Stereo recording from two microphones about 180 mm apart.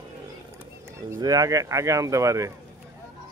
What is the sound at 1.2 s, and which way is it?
Speech, 20° right (ahead or behind).